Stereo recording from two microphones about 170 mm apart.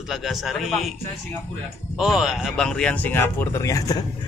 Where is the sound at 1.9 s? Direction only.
Centre (ahead or behind); by 4.0 s 20° left (ahead or behind).